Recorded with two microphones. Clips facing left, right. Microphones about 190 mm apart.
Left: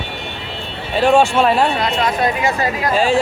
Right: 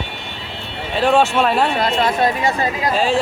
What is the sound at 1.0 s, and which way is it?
Speech, centre (ahead or behind).